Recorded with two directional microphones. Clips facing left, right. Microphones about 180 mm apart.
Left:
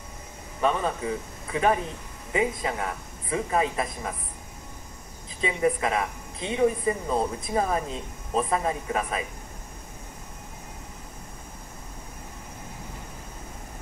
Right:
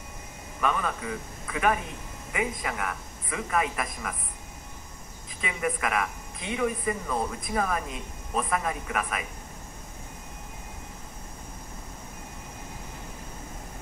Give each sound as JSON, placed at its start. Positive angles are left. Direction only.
{"t": 0.6, "sound": "a woman's voice", "side_deg": 30}
{"t": 5.4, "sound": "a woman's voice", "side_deg": 25}